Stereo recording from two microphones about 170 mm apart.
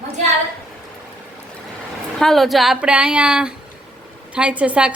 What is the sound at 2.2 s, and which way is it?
A woman's voice, centre (ahead or behind).